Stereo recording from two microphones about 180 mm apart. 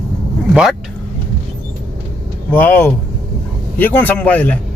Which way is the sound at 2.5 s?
10° left (ahead or behind).